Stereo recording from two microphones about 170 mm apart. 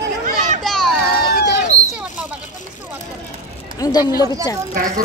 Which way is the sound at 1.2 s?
60° left (ahead or behind).